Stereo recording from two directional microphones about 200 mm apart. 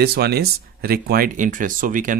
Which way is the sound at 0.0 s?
55° right (ahead or behind).